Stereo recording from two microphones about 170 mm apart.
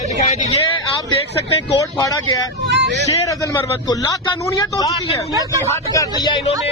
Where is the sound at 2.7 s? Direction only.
90° right.